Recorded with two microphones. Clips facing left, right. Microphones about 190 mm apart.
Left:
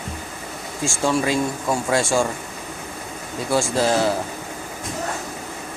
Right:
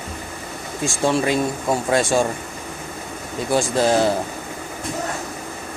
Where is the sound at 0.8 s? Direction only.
20° right (ahead or behind).